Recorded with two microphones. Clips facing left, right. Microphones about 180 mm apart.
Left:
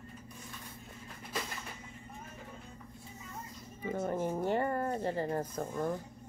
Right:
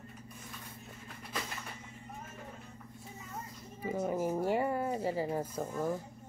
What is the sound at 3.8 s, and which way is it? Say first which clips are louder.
Speech: right 1 dB; 5° right (ahead or behind).